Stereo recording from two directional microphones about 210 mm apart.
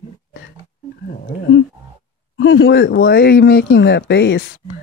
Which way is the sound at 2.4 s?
60° left (ahead or behind).